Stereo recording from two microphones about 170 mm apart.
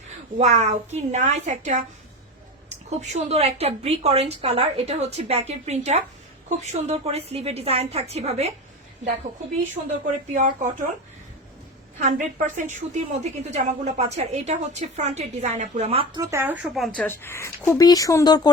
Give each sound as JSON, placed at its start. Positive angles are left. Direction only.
{"t": 0.3, "sound": "a woman's voice", "side_deg": -45}
{"t": 9.8, "sound": "a woman's voice", "side_deg": -35}
{"t": 11.9, "sound": "a woman's voice", "side_deg": -50}
{"t": 16.2, "sound": "speech", "side_deg": -15}
{"t": 16.6, "sound": "speech", "side_deg": 0}